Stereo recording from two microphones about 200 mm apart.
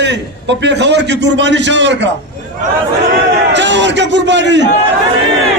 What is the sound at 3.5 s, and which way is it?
A man's voice, 65° right (ahead or behind).